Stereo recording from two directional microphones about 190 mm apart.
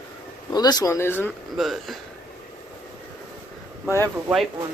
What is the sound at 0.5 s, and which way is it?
Speech, 20° left (ahead or behind).